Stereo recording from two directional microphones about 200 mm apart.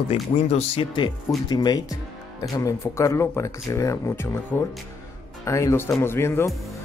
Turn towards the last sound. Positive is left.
turn(degrees=15)  # may be behind; listen again after turning